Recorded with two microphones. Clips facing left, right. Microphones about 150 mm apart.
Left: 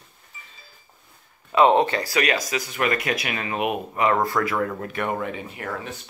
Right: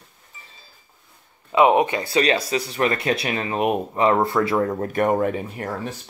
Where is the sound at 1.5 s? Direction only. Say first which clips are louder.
Right 1 dB; 15° right (ahead or behind); by 5.9 s 35° right (ahead or behind).